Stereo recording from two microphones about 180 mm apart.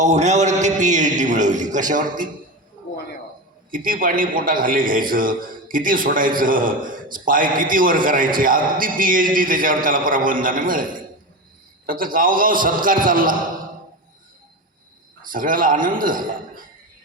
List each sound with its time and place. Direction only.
0.0 s a man's voice: 40° right (ahead or behind)
3.7 s a man's voice: 50° right (ahead or behind)
15.3 s a man's voice: 50° right (ahead or behind)